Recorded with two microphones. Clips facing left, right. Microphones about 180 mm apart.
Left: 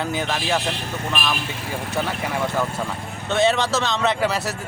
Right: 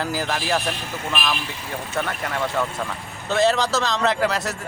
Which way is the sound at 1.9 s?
5° left (ahead or behind).